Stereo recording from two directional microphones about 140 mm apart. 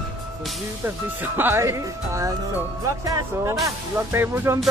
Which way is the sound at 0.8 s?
15° right (ahead or behind).